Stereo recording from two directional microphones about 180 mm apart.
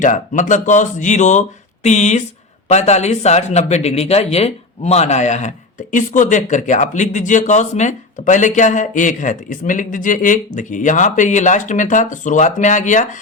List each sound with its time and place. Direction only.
0.0 s speech: 45° left (ahead or behind)